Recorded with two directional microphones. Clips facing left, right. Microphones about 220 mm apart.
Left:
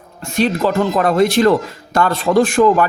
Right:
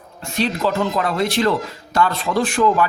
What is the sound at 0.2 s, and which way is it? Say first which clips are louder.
Speech: left 5 dB; 50° left (ahead or behind).